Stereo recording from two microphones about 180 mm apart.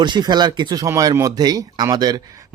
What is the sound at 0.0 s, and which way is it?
Speech, 25° right (ahead or behind).